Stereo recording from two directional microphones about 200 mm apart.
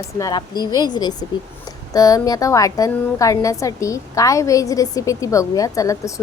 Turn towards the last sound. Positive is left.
turn(degrees=15)  # may be behind; listen again after turning